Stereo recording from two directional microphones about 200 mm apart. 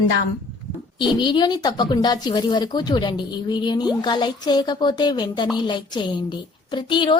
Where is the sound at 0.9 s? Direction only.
25° left (ahead or behind).